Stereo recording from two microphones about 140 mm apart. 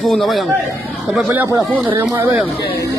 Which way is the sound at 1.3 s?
15° right (ahead or behind).